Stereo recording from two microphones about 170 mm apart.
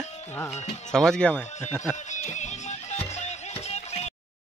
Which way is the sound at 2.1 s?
45° left (ahead or behind).